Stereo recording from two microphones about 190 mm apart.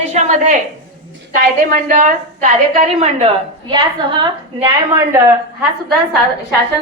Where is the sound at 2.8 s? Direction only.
30° right (ahead or behind).